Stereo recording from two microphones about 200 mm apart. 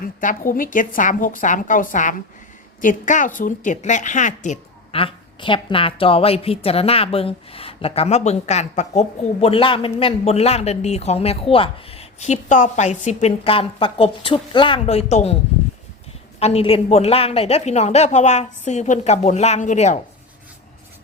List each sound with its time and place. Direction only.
0.0 s a man's voice: 40° left (ahead or behind)
16.4 s a man's voice: 30° left (ahead or behind)